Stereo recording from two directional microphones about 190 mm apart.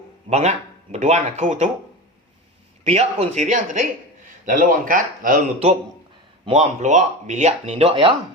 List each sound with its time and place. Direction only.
0.3 s speech: 35° right (ahead or behind)
2.8 s speech: 35° right (ahead or behind)